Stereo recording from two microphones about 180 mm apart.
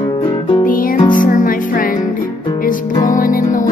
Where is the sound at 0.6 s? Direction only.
50° left (ahead or behind).